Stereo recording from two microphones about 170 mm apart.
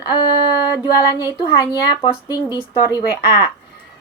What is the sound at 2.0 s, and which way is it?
Speech, 25° left (ahead or behind).